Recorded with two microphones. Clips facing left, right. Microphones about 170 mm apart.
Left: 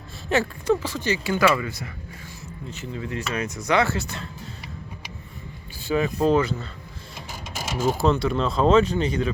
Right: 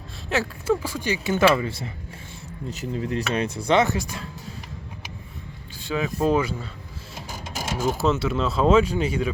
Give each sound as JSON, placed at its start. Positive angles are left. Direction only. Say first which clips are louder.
{"t": 0.3, "sound": "speech", "louder": "left 2 dB", "side_deg": -5}
{"t": 2.6, "sound": "speech", "louder": "right 5 dB", "side_deg": -40}
{"t": 5.8, "sound": "speech", "louder": "left 2 dB", "side_deg": 0}
{"t": 7.2, "sound": "printer", "louder": "right 2 dB", "side_deg": -10}
{"t": 7.9, "sound": "speech", "louder": "left 2 dB", "side_deg": 0}